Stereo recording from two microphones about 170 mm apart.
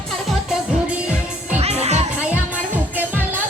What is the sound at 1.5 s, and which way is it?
Music, 40° right (ahead or behind).